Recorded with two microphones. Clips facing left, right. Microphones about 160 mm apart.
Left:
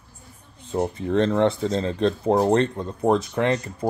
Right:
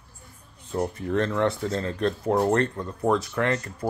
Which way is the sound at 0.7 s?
20° left (ahead or behind).